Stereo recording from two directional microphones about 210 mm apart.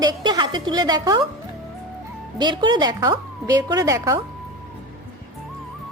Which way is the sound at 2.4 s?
20° right (ahead or behind).